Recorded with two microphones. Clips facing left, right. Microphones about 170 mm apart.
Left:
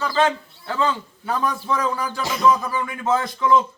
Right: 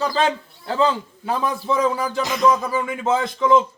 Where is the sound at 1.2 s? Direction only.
25° right (ahead or behind).